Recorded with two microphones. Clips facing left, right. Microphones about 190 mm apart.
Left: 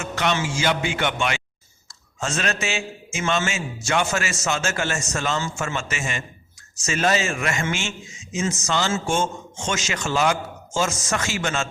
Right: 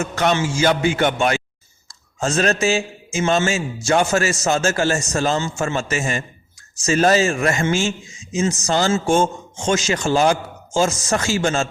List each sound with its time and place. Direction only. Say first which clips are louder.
0.0 s a man's voice: right 5 dB; 40° right (ahead or behind)